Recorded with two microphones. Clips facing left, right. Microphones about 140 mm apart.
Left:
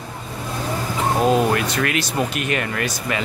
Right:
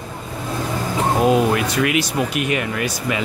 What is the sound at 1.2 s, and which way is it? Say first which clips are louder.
Speech: right 1 dB; 10° right (ahead or behind).